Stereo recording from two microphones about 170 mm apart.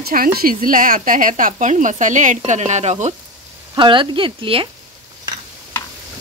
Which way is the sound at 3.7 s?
30° right (ahead or behind).